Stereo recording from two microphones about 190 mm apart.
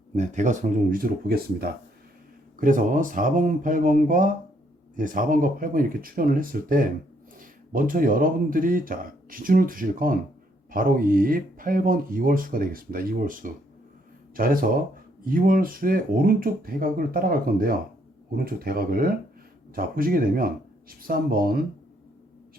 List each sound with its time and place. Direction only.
0.2 s speech: 40° right (ahead or behind)